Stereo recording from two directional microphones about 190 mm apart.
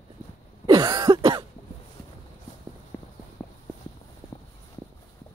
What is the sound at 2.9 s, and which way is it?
Clip-clop, 15° left (ahead or behind).